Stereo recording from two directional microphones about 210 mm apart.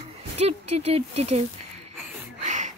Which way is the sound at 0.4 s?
30° right (ahead or behind).